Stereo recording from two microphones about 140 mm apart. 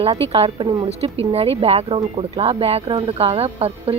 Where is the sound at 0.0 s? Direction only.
45° right (ahead or behind).